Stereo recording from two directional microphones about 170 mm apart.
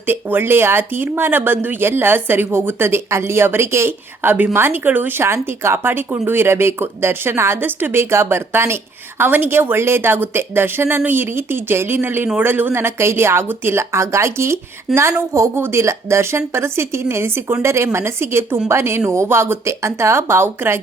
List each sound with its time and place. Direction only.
0.0 s speech: 10° right (ahead or behind)